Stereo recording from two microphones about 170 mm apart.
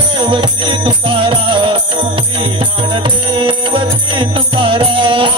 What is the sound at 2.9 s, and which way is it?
Music, 30° right (ahead or behind).